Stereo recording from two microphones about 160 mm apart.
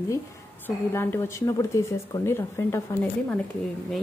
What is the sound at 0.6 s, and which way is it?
Speech, 15° left (ahead or behind).